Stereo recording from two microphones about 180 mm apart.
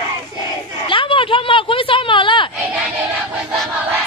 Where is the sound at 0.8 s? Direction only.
30° left (ahead or behind).